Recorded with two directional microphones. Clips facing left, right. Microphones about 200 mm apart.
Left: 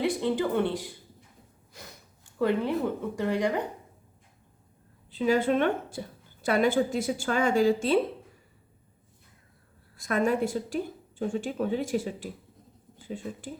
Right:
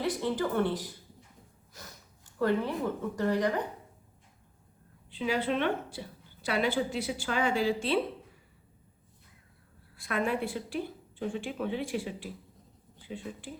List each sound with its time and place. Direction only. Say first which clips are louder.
0.0 s speech: left 4 dB; 20° left (ahead or behind)
2.4 s speech: left 3 dB; 15° left (ahead or behind)
5.1 s a woman's voice: left 6 dB; 45° left (ahead or behind)
10.0 s a woman's voice: left 5 dB; 45° left (ahead or behind)